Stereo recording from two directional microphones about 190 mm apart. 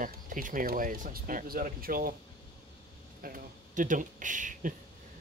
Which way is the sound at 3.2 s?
45° right (ahead or behind).